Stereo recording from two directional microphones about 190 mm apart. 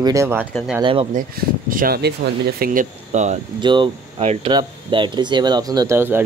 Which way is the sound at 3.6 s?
25° right (ahead or behind).